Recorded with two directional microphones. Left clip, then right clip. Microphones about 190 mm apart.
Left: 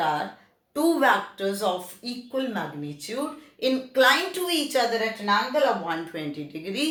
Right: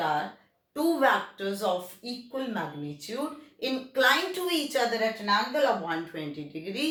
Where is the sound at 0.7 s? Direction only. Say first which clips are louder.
Left 3 dB; 35° left (ahead or behind).